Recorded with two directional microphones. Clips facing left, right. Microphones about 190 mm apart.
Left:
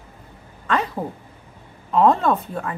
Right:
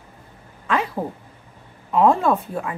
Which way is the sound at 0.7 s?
5° right (ahead or behind).